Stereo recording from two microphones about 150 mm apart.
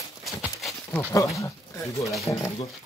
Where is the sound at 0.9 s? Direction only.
15° left (ahead or behind).